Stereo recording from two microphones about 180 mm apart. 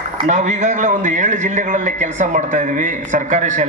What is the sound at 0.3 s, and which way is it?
A man's voice, 40° right (ahead or behind).